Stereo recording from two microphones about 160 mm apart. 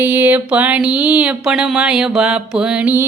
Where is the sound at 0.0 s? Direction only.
10° right (ahead or behind).